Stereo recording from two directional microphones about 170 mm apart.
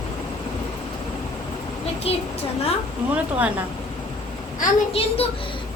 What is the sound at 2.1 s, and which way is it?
Speech, 35° left (ahead or behind).